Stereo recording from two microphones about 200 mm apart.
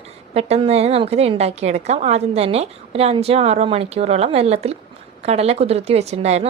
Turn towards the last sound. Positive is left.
turn(degrees=-30)  # may be behind; listen again after turning